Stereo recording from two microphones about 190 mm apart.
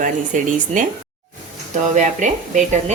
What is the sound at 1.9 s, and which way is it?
Speech, 40° right (ahead or behind).